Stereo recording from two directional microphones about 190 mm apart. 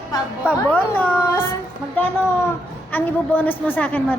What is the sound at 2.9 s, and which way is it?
Speech, 10° left (ahead or behind).